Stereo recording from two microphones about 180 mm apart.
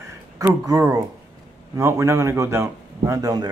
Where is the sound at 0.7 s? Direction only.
15° right (ahead or behind).